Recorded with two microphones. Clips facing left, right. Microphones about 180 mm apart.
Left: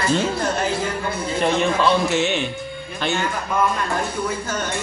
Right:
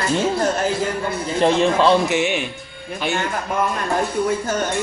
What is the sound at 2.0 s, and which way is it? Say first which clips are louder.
Speech: even; 10° right (ahead or behind).